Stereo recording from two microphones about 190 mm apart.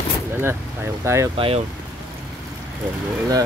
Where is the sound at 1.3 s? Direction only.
30° right (ahead or behind).